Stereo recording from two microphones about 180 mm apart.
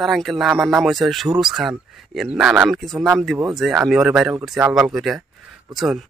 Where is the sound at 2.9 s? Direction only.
15° right (ahead or behind).